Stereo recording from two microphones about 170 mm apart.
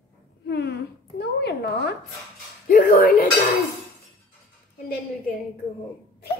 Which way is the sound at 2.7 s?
50° left (ahead or behind).